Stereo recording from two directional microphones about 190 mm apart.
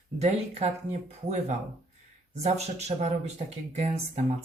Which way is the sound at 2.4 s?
35° right (ahead or behind).